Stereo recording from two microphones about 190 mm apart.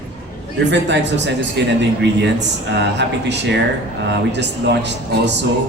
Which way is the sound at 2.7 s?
65° right (ahead or behind).